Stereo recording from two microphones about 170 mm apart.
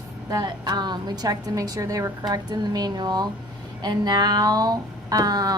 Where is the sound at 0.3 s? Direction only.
20° right (ahead or behind).